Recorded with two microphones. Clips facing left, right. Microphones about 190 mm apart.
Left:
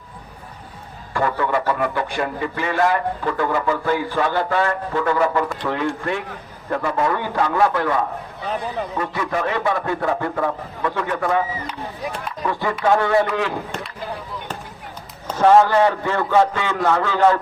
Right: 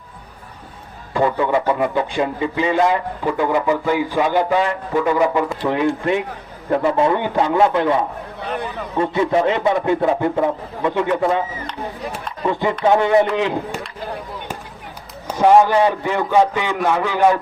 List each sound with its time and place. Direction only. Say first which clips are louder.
1.1 s a man's voice: right 3 dB; 20° right (ahead or behind)
12.5 s a man's voice: right 3 dB; 20° right (ahead or behind)
15.3 s a man's voice: right 1 dB; 15° right (ahead or behind)